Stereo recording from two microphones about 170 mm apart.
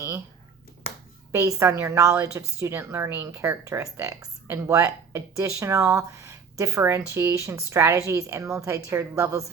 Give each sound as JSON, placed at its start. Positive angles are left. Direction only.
{"t": 1.3, "sound": "speech", "side_deg": -15}